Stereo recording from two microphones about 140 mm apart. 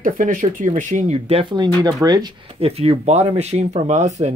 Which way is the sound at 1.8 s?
25° right (ahead or behind).